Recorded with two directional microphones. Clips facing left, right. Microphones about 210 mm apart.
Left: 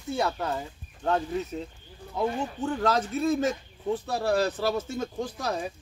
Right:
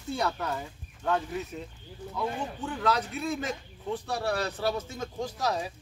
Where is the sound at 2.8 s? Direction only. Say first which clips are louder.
Left 3 dB; 45° left (ahead or behind).